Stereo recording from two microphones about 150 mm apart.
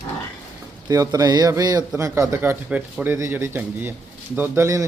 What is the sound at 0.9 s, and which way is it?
Speech, 25° right (ahead or behind).